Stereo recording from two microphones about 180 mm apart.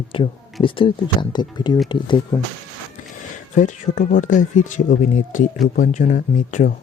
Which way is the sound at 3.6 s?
45° left (ahead or behind).